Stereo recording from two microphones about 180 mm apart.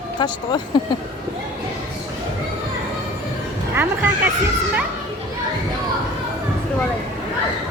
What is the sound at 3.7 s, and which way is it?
Speech, 10° right (ahead or behind).